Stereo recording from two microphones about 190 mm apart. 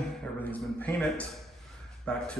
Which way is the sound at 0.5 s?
10° left (ahead or behind).